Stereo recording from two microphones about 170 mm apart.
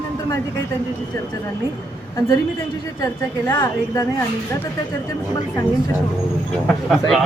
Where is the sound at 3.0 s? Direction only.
15° left (ahead or behind).